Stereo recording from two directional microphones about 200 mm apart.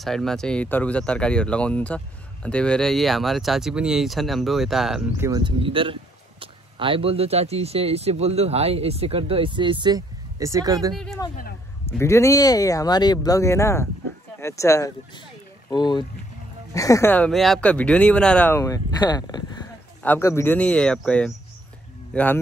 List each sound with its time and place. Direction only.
0.0 s speech: centre (ahead or behind)
5.2 s speech: 20° right (ahead or behind)
11.2 s speech: 20° left (ahead or behind)